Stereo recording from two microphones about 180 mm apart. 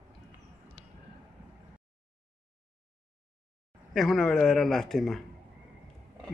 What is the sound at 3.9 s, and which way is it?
A man's voice, centre (ahead or behind).